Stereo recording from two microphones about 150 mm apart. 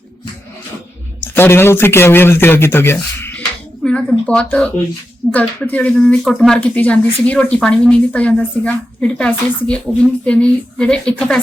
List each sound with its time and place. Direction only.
1.4 s speech: 15° left (ahead or behind)